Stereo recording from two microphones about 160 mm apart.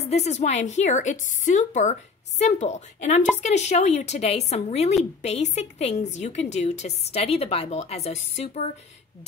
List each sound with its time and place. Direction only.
0.0 s a woman's voice: 45° left (ahead or behind)